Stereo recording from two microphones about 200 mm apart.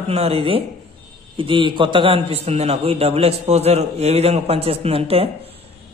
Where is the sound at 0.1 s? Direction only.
30° right (ahead or behind).